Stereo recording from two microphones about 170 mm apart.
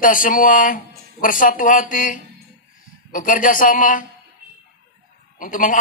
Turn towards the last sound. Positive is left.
turn(degrees=50)  # may be behind; listen again after turning